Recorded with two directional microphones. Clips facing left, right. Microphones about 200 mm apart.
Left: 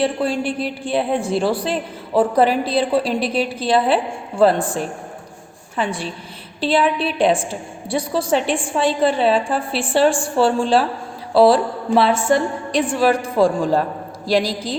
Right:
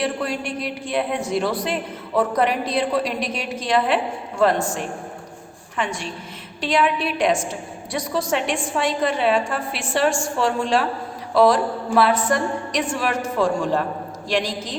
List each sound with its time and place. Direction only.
0.0 s a woman's voice: 30° left (ahead or behind)